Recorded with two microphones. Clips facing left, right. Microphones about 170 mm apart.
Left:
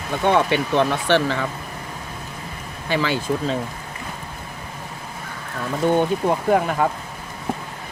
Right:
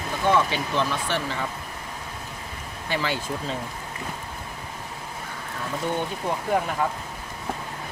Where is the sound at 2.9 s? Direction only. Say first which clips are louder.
Left 6 dB; 90° left.